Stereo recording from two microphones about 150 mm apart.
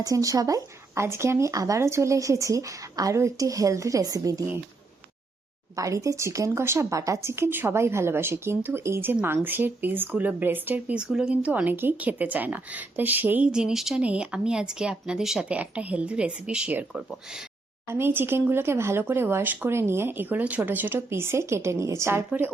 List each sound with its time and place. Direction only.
0.0 s speech: 25° right (ahead or behind)
5.7 s speech: 20° right (ahead or behind)